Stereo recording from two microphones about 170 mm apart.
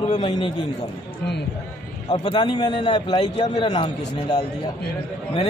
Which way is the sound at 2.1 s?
30° left (ahead or behind).